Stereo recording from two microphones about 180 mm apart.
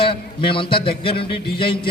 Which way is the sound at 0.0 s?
30° left (ahead or behind).